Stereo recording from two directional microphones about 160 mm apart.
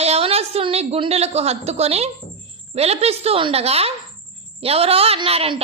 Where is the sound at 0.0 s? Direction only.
40° right (ahead or behind).